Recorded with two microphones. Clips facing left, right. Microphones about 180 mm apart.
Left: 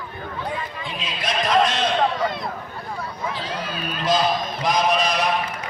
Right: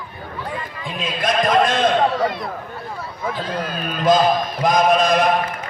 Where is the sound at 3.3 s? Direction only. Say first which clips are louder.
Right 4 dB; 50° right (ahead or behind).